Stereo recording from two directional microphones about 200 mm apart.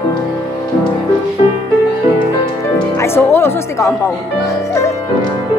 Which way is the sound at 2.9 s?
15° left (ahead or behind).